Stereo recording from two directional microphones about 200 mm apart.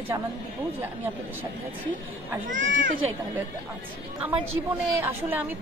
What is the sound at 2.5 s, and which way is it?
Speech, 70° right (ahead or behind).